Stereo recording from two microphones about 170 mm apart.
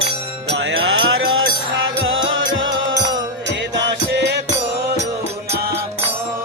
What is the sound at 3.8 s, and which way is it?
Music, 90° right.